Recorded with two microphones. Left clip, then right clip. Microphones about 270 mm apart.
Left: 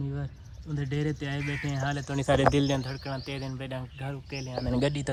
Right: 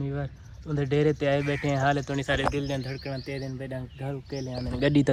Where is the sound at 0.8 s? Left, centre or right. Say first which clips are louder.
Right 9 dB; left.